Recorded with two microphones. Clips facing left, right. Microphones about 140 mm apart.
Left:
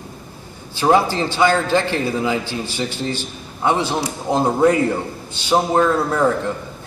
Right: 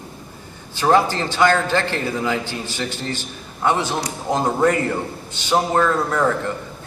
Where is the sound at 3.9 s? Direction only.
10° left (ahead or behind).